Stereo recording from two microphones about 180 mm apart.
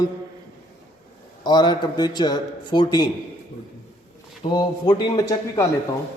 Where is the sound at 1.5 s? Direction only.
25° left (ahead or behind).